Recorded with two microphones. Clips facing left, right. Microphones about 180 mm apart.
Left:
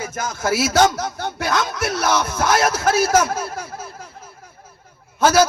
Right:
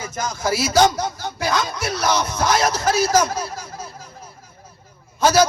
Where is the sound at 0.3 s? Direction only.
5° left (ahead or behind).